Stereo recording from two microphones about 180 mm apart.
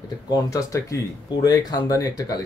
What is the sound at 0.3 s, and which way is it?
A man's voice, 15° left (ahead or behind).